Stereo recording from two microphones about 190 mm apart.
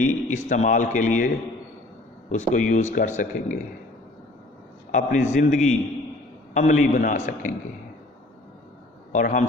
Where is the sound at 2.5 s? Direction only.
40° left (ahead or behind).